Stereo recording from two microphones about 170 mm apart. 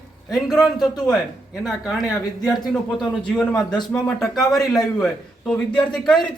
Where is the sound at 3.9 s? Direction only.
5° left (ahead or behind).